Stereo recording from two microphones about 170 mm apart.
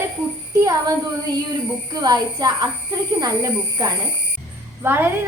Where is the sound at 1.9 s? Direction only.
25° right (ahead or behind).